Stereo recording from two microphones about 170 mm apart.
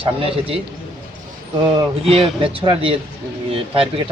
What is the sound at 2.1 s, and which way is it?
Speech, centre (ahead or behind).